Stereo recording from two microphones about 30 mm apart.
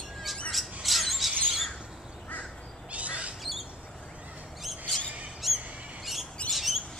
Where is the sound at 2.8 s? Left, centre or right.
Right.